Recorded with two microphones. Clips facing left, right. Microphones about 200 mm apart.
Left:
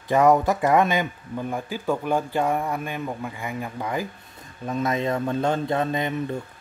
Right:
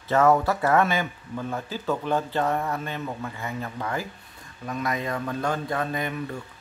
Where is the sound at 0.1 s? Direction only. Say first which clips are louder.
Left 2 dB; 15° left (ahead or behind).